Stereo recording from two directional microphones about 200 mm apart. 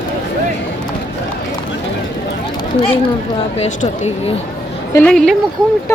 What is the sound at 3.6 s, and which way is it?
Speech, 35° left (ahead or behind).